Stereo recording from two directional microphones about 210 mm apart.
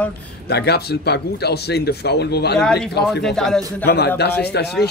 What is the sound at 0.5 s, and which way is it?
Speech, 50° left (ahead or behind).